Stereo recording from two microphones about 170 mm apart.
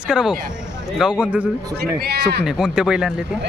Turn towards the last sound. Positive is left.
turn(degrees=-5)  # may be behind; listen again after turning